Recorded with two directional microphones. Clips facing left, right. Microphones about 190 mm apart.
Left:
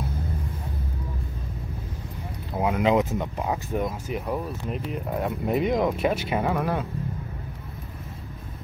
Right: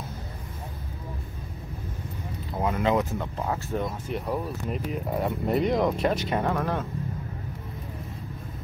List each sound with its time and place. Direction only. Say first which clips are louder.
2.6 s speech: left 3 dB; 15° left (ahead or behind)
4.1 s speech: left 1 dB; centre (ahead or behind)